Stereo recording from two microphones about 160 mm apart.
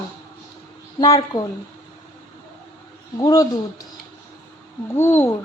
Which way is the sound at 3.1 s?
20° left (ahead or behind).